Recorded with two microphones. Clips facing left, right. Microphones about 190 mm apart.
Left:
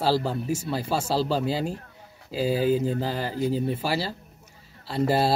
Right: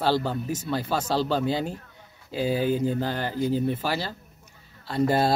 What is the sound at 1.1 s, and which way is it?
Speech, 35° left (ahead or behind).